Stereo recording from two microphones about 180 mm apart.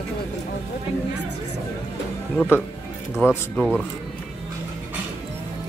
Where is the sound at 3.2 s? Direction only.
Centre (ahead or behind).